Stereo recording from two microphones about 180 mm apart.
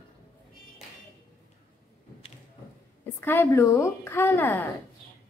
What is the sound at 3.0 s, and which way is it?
A woman's voice, 10° left (ahead or behind).